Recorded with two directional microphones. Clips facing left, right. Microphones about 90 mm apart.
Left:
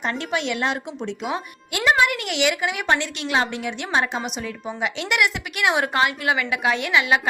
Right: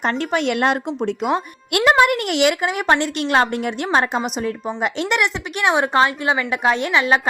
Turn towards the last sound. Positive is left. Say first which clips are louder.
# right 3 dB
turn(degrees=-35)  # may be behind; listen again after turning